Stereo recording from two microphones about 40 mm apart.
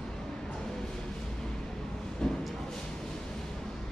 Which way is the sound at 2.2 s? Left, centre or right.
Centre.